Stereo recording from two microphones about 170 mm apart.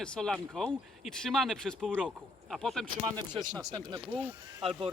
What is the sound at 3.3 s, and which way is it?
Speech, 25° right (ahead or behind).